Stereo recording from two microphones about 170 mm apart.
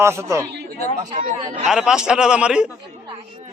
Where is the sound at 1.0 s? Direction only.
45° right (ahead or behind).